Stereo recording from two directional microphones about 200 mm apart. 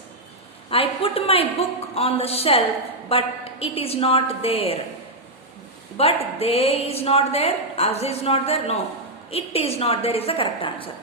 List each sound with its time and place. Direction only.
0.7 s a woman's voice: 30° left (ahead or behind)
6.0 s a woman's voice: 30° left (ahead or behind)